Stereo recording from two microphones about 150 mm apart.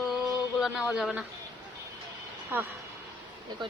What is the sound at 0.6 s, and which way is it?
Speech, 5° right (ahead or behind).